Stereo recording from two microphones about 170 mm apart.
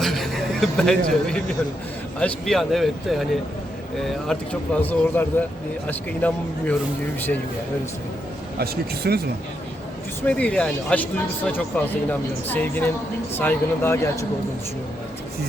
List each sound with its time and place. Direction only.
0.0 s a sound: centre (ahead or behind)
2.1 s speech: 5° left (ahead or behind)
8.5 s speech: 65° right (ahead or behind)
10.2 s speech: 5° left (ahead or behind)